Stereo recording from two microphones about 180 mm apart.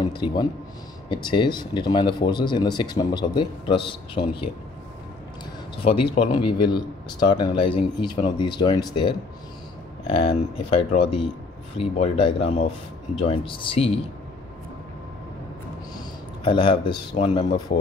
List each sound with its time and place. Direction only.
0.0 s speech: 25° left (ahead or behind)
5.8 s speech: 30° left (ahead or behind)
16.4 s speech: 25° left (ahead or behind)